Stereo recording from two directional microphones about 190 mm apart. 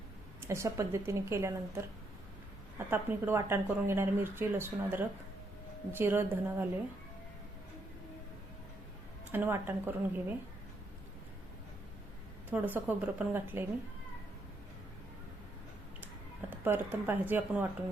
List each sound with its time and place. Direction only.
0.4 s speech: 15° right (ahead or behind)
9.3 s speech: 10° right (ahead or behind)
12.5 s speech: 10° right (ahead or behind)
16.5 s speech: 10° right (ahead or behind)